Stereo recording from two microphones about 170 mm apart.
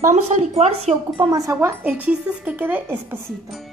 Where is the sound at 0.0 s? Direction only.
45° right (ahead or behind); by 1.5 s 25° right (ahead or behind).